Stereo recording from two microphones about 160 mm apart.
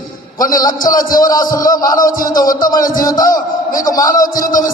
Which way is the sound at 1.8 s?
25° left (ahead or behind).